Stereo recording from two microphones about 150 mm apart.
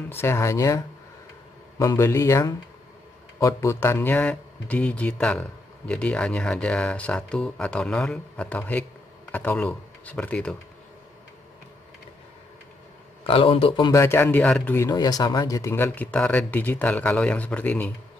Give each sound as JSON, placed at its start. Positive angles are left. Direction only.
{"t": 0.1, "sound": "speech", "side_deg": 15}
{"t": 13.3, "sound": "speech", "side_deg": 35}
{"t": 14.0, "sound": "speech", "side_deg": 15}